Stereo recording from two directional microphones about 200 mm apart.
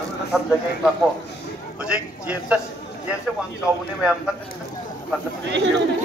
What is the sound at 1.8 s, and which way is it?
Speech, 5° right (ahead or behind).